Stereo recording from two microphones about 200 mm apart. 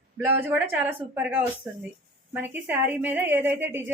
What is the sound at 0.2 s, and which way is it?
Speech, 10° right (ahead or behind).